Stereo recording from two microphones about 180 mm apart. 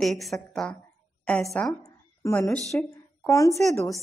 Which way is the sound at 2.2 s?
15° left (ahead or behind).